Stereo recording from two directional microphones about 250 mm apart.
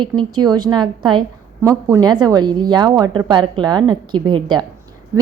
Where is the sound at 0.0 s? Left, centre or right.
Centre.